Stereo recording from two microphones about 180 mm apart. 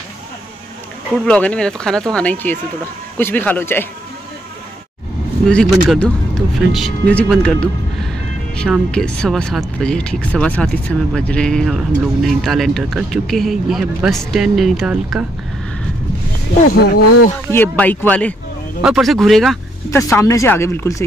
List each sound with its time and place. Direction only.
1.2 s speech: 5° left (ahead or behind)
5.5 s speech: 5° left (ahead or behind)
16.7 s speech: 60° left (ahead or behind)
17.5 s speech: 10° left (ahead or behind)
19.9 s speech: 15° left (ahead or behind)